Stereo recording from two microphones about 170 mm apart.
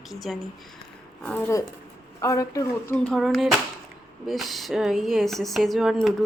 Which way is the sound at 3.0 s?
Centre (ahead or behind).